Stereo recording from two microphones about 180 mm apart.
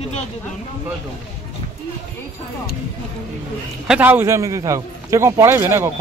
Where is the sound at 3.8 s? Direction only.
5° right (ahead or behind).